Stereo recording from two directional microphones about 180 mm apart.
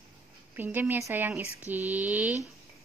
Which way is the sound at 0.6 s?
10° right (ahead or behind).